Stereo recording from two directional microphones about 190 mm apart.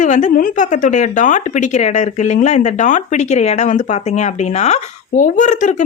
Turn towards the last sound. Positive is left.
turn(degrees=40)  # may be behind; listen again after turning